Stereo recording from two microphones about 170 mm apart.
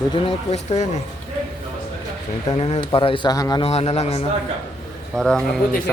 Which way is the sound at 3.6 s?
35° left (ahead or behind).